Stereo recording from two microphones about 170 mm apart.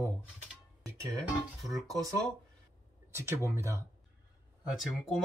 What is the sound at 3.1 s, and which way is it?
Speech, 15° right (ahead or behind).